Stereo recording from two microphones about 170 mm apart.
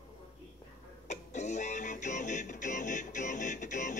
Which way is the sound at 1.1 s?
45° left (ahead or behind).